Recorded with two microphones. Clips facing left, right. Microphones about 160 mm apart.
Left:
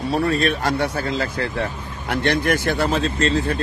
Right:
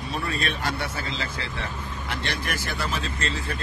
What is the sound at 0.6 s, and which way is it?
Speech, 60° left (ahead or behind).